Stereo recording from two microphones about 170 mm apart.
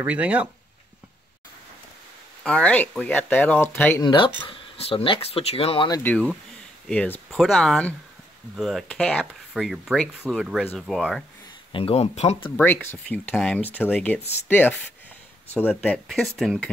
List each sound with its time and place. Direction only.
0.0 s speech: 10° right (ahead or behind)
2.4 s speech: 5° left (ahead or behind)
4.0 s speech: 30° left (ahead or behind)
6.0 s speech: 5° left (ahead or behind)
11.7 s speech: 35° left (ahead or behind)
12.5 s speech: 10° left (ahead or behind)
15.9 s speech: centre (ahead or behind)